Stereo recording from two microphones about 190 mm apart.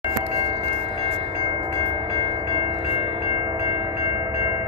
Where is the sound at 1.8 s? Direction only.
30° right (ahead or behind).